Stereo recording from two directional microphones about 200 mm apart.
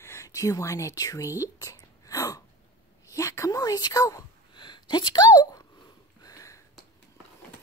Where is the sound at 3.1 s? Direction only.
15° left (ahead or behind).